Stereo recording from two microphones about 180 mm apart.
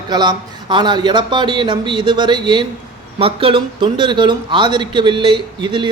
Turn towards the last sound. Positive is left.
turn(degrees=-25)  # may be behind; listen again after turning